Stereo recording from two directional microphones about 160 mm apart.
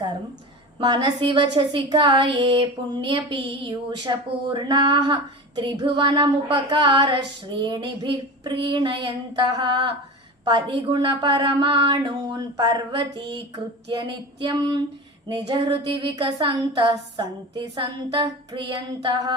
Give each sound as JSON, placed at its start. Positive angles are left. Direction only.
{"t": 0.8, "sound": "a woman's voice", "side_deg": -25}